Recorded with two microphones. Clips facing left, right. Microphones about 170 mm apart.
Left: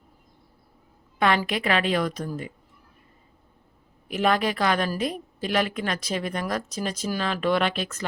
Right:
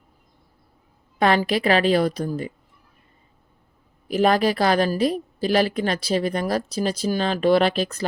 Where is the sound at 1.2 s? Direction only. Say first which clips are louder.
Right 4 dB; 35° right (ahead or behind).